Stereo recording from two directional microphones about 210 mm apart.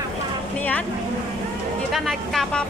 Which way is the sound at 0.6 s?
5° left (ahead or behind).